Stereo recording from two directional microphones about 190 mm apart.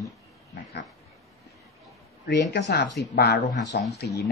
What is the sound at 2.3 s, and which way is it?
Speech, 60° left (ahead or behind).